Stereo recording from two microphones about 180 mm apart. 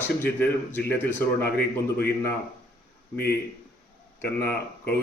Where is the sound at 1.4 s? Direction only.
60° left (ahead or behind).